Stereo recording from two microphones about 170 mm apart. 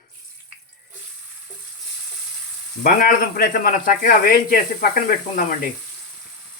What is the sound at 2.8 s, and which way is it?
Speech, 60° left (ahead or behind).